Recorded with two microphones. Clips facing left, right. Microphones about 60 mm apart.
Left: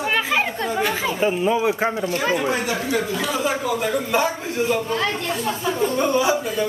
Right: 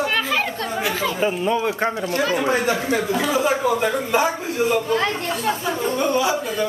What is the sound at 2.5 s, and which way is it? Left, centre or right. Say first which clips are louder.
A man's voice: right 3 dB; right.